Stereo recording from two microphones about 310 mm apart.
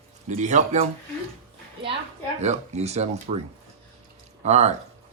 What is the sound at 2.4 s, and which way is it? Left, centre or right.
Speech, right.